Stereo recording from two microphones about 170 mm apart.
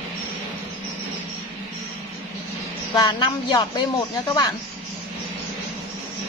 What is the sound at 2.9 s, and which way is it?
Speech, 25° left (ahead or behind).